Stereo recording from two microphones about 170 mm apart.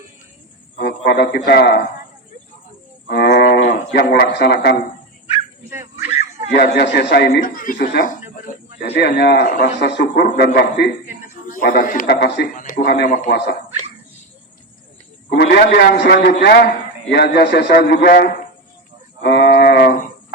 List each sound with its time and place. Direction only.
0.8 s a man's voice: 70° left (ahead or behind)
3.1 s speech: 80° left
5.7 s a sound: 15° right (ahead or behind)
6.5 s a man's voice: 75° left (ahead or behind)
11.5 s speech: 55° left (ahead or behind); by 12.5 s 70° left (ahead or behind)
12.5 s speech: 55° left (ahead or behind)
13.3 s a man's voice: 75° left (ahead or behind)
15.3 s a man's voice: 70° left (ahead or behind)
19.2 s wild animals: 70° left (ahead or behind)